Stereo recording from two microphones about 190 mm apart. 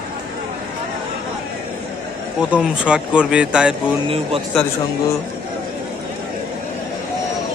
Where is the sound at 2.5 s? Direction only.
5° right (ahead or behind).